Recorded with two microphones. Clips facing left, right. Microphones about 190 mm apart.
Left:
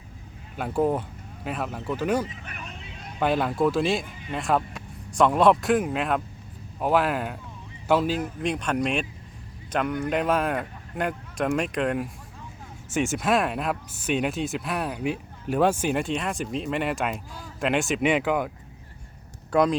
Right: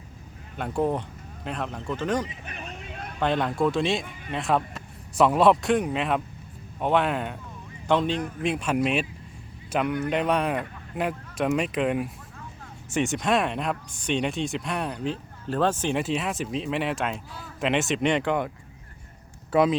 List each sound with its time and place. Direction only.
0.5 s speech: 5° left (ahead or behind)
2.8 s a sound: 55° right (ahead or behind)
3.2 s a man's voice: 5° left (ahead or behind)